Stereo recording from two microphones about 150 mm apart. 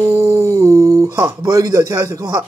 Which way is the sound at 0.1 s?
20° right (ahead or behind).